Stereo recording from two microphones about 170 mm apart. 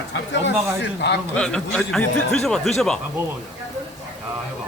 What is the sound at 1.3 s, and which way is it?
Speech, 5° left (ahead or behind).